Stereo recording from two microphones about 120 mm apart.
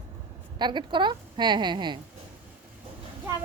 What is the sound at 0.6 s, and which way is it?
Speech, 40° right (ahead or behind).